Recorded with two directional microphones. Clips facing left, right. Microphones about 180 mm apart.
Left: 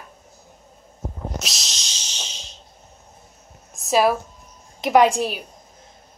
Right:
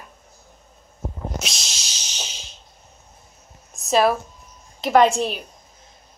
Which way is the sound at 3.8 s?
10° left (ahead or behind).